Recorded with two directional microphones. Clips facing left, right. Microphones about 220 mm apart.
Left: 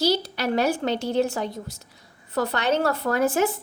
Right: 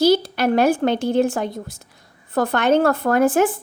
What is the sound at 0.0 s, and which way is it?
A woman's voice, 55° right (ahead or behind).